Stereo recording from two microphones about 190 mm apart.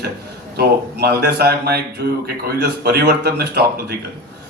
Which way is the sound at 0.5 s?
55° right (ahead or behind).